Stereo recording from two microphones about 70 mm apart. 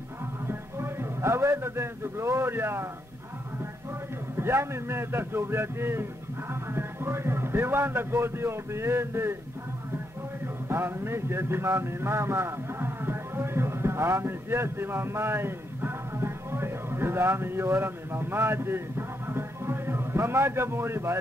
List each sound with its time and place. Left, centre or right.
0.5 s a man's voice: right
4.4 s speech: right
10.4 s a man's voice: right